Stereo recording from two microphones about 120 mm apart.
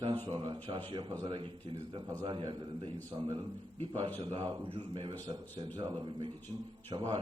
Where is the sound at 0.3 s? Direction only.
40° right (ahead or behind).